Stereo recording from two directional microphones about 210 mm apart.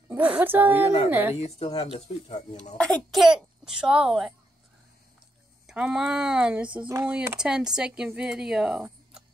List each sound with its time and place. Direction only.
0.1 s a woman's voice: 10° right (ahead or behind)
1.6 s speech: 30° left (ahead or behind)
2.8 s speech: centre (ahead or behind)
5.7 s speech: 5° right (ahead or behind)